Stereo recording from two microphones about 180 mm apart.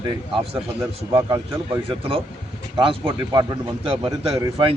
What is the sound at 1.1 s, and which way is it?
Speech, 15° right (ahead or behind).